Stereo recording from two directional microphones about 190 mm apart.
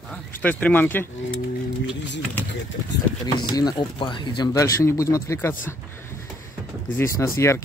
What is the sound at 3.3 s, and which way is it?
Speech, 20° left (ahead or behind).